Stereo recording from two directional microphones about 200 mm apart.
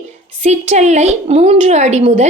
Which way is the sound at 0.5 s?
35° right (ahead or behind).